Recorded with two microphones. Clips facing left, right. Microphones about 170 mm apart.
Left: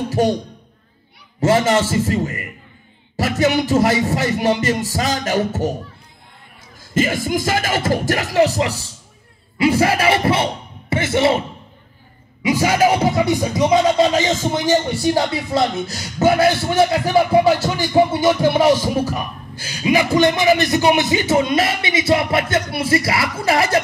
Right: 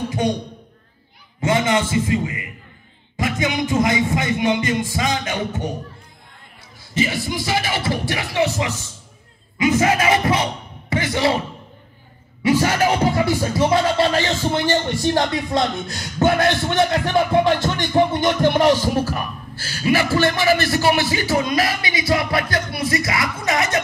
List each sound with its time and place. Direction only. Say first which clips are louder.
1.4 s music: left 3 dB; 40° left (ahead or behind)
6.8 s music: left 3 dB; 50° left (ahead or behind)
9.6 s speech: left 1 dB; 30° left (ahead or behind)
12.4 s speech: left 2 dB; 10° left (ahead or behind); by 23.8 s 30° left (ahead or behind)